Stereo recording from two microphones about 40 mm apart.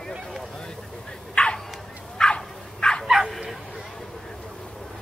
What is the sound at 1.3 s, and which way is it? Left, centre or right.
Bow-wow, left.